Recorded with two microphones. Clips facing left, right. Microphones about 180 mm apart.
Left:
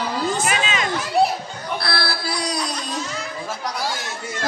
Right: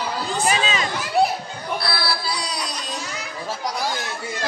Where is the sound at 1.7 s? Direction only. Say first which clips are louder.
Left 1 dB; 50° left (ahead or behind).